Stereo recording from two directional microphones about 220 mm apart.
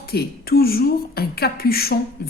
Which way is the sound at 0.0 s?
45° left (ahead or behind).